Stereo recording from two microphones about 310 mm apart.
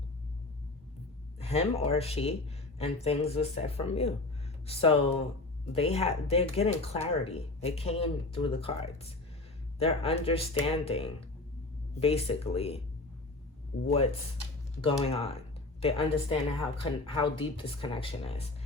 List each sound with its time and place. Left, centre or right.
1.4 s speech: centre
13.8 s speech: centre